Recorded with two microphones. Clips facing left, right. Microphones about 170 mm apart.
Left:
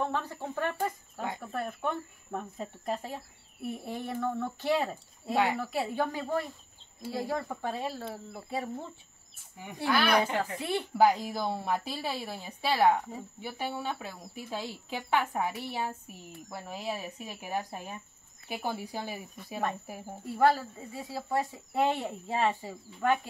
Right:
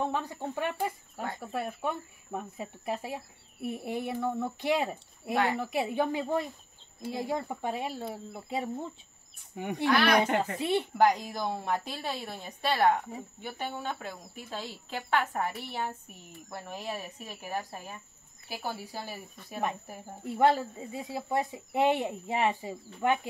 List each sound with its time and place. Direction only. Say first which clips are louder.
0.0 s speech: right 1 dB; 15° right (ahead or behind)
5.3 s a woman's voice: even; 15° left (ahead or behind)
5.6 s speech: right 2 dB; 20° right (ahead or behind)
9.8 s speech: right 2 dB; 5° left (ahead or behind)
10.1 s speech: right 2 dB; 20° right (ahead or behind)
11.0 s a woman's voice: left 3 dB; 5° left (ahead or behind)
20.2 s speech: right 1 dB; 20° right (ahead or behind)